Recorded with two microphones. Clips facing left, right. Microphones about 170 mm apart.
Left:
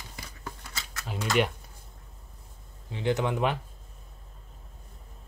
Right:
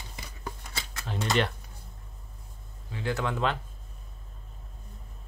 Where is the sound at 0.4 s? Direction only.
25° right (ahead or behind).